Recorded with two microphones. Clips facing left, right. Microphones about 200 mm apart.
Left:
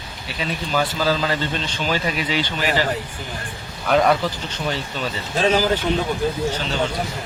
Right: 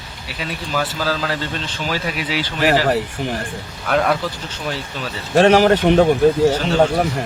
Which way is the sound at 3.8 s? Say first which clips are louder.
Left 1 dB; centre (ahead or behind).